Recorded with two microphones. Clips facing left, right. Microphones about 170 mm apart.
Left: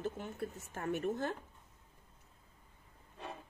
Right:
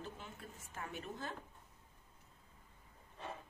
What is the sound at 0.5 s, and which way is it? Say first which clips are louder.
Speech: left 5 dB; 70° left (ahead or behind).